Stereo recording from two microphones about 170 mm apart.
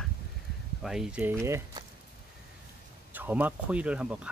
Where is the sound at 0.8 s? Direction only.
5° right (ahead or behind).